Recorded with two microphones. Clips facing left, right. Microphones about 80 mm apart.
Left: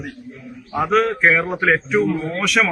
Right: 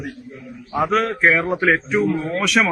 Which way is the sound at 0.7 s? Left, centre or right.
Centre.